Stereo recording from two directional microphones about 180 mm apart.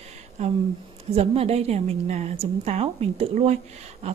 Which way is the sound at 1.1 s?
35° right (ahead or behind).